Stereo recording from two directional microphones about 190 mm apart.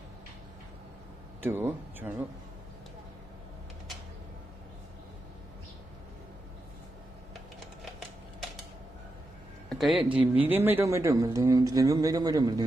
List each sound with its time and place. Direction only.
1.4 s speech: 10° right (ahead or behind)
9.7 s speech: centre (ahead or behind); by 12.6 s 20° right (ahead or behind)